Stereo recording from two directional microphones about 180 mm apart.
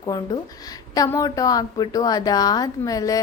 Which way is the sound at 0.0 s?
25° left (ahead or behind).